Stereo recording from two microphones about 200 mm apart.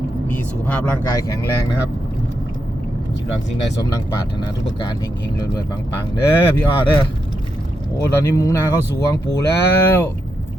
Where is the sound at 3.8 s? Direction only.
15° left (ahead or behind).